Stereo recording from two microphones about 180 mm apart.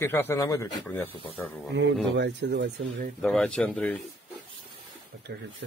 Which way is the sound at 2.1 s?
70° right (ahead or behind).